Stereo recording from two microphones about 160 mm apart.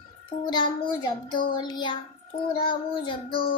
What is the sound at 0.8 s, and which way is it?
Child singing, 30° left (ahead or behind).